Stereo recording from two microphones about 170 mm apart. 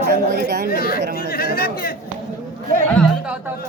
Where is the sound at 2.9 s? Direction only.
Centre (ahead or behind).